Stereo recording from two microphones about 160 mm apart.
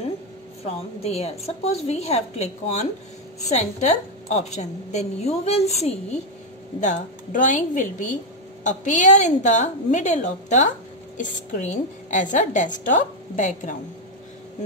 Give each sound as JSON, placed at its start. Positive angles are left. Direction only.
{"t": 0.7, "sound": "a woman's voice", "side_deg": 40}